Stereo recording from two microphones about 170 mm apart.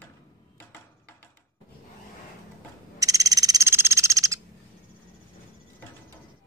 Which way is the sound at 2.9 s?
20° right (ahead or behind).